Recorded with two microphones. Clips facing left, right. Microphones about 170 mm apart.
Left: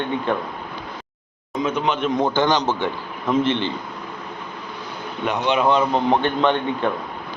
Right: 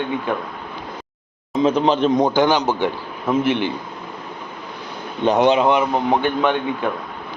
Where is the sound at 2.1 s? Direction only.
15° right (ahead or behind).